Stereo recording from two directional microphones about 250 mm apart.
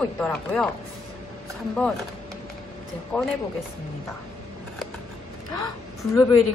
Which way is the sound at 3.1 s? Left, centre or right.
Centre.